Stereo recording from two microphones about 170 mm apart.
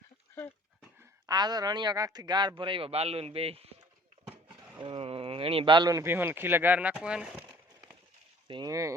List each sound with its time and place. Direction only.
0.3 s dog: 10° left (ahead or behind)
1.3 s speech: 25° right (ahead or behind)
4.8 s speech: 30° right (ahead or behind); by 7.5 s 5° right (ahead or behind)
8.4 s speech: 25° right (ahead or behind)